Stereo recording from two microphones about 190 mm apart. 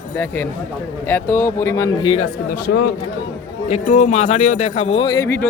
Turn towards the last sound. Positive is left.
turn(degrees=15)  # may be behind; listen again after turning